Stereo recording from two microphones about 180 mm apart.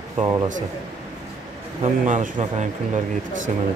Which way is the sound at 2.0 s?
45° right (ahead or behind).